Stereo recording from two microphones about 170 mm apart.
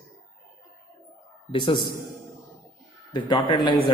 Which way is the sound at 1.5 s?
30° left (ahead or behind).